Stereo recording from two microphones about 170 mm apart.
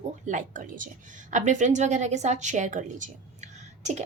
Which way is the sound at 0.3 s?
50° right (ahead or behind).